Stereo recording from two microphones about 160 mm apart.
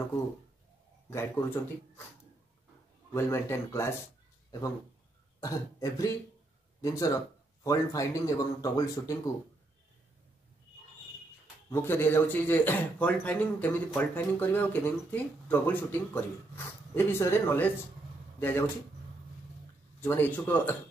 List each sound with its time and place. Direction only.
1.1 s speech: 15° left (ahead or behind)
3.1 s speech: 15° left (ahead or behind)
5.4 s speech: 20° left (ahead or behind)
11.7 s speech: 15° left (ahead or behind)
20.0 s speech: 15° left (ahead or behind)